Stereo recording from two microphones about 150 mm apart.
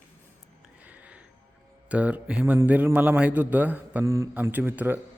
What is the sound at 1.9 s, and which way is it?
A man's voice, 10° right (ahead or behind).